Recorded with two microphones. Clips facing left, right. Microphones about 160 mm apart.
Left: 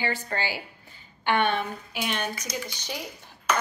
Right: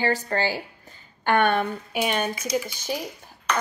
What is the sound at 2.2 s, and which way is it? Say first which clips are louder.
Speech: right 6 dB; 10° right (ahead or behind).